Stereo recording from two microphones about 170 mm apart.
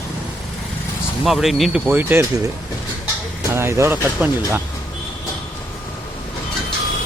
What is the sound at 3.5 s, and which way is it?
Speech, 15° right (ahead or behind).